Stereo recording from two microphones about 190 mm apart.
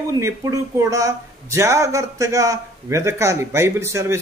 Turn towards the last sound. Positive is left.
turn(degrees=-15)  # may be behind; listen again after turning